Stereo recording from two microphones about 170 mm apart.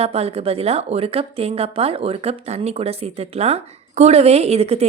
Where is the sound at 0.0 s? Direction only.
35° right (ahead or behind).